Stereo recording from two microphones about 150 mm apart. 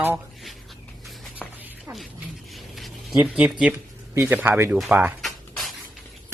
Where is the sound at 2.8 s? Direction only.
5° right (ahead or behind).